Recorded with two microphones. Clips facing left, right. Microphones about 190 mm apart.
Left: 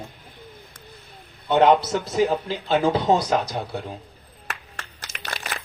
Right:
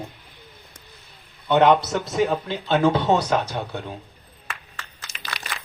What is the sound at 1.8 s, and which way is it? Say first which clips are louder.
Speech: left 1 dB; 30° left (ahead or behind).